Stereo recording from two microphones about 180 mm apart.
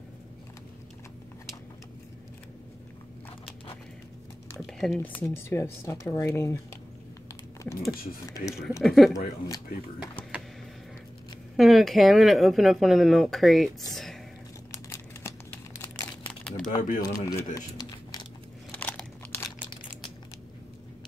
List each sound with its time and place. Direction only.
4.6 s speech: centre (ahead or behind)
8.8 s speech: centre (ahead or behind)
11.5 s speech: centre (ahead or behind)
13.9 s a sound: centre (ahead or behind)
14.7 s a sound: 15° left (ahead or behind)
16.6 s speech: 45° left (ahead or behind)
17.0 s speech: 20° left (ahead or behind)
17.6 s a sound: 20° left (ahead or behind)
18.7 s crunch: 10° left (ahead or behind)